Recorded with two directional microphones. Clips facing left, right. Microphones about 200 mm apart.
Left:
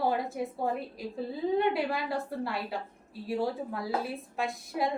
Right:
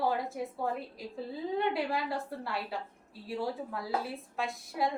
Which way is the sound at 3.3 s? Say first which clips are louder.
Left 3 dB; 15° left (ahead or behind).